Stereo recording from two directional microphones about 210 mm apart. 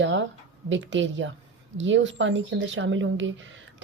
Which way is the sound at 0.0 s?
60° right (ahead or behind).